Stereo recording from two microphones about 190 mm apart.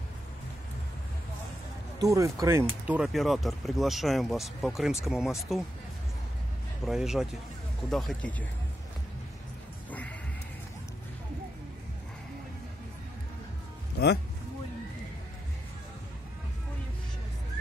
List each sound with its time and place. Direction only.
2.0 s speech: 15° right (ahead or behind); by 5.6 s centre (ahead or behind)
6.9 s speech: centre (ahead or behind)
9.8 s music: 10° left (ahead or behind)
13.9 s speech: 60° left (ahead or behind)